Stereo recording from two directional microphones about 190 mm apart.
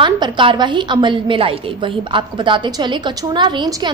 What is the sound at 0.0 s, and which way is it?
A woman's voice, 25° right (ahead or behind).